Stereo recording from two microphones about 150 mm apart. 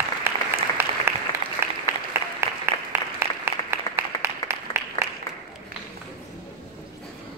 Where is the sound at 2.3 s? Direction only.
15° right (ahead or behind).